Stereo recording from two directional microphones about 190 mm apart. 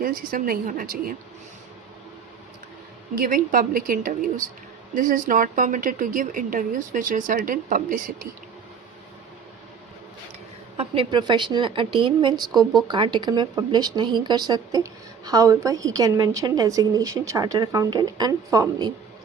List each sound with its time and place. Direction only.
0.0 s a woman's voice: 50° right (ahead or behind)
3.2 s a woman's voice: 45° right (ahead or behind)
10.8 s a woman's voice: 25° right (ahead or behind)